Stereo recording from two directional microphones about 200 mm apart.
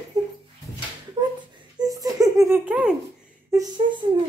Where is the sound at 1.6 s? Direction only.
20° right (ahead or behind).